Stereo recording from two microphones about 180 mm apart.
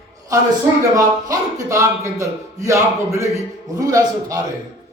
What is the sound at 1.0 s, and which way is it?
A man's voice, 15° right (ahead or behind).